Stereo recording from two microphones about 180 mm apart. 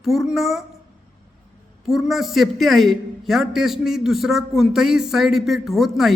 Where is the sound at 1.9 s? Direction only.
Centre (ahead or behind).